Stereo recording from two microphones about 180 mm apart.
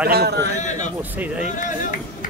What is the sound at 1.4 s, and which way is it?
Speech, 45° left (ahead or behind).